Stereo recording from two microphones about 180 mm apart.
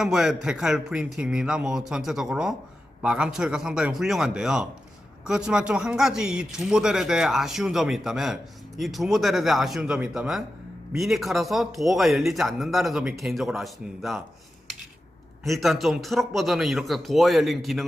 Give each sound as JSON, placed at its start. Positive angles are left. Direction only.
{"t": 0.0, "sound": "a man's voice", "side_deg": 0}
{"t": 15.4, "sound": "a man's voice", "side_deg": 0}